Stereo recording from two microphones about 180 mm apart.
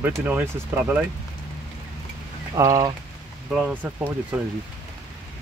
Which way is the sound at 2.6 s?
20° right (ahead or behind).